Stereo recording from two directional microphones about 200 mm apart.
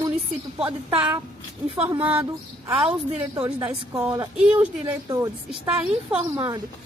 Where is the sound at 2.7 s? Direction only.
25° right (ahead or behind).